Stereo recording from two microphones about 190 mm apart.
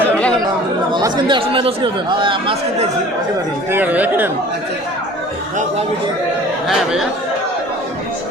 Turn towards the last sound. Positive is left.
turn(degrees=0)  # may be behind; listen again after turning